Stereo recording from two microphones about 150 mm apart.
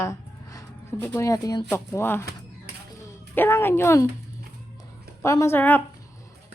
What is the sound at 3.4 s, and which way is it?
Speech, 15° left (ahead or behind).